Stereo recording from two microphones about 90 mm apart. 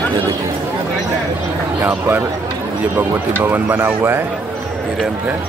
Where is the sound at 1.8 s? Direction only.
20° right (ahead or behind).